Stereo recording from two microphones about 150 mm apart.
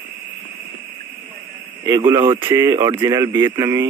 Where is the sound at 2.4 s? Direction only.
15° right (ahead or behind).